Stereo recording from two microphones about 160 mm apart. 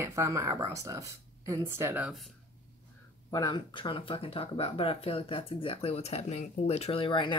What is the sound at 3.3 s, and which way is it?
Speech, 25° left (ahead or behind).